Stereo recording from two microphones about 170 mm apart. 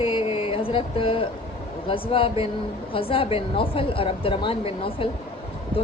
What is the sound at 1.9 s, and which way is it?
Speech, 30° left (ahead or behind).